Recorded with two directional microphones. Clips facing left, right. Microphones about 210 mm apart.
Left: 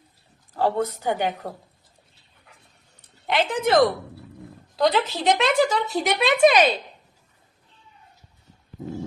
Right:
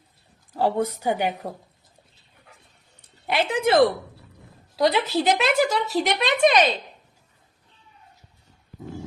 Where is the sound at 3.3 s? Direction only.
10° right (ahead or behind); by 6.8 s 5° left (ahead or behind).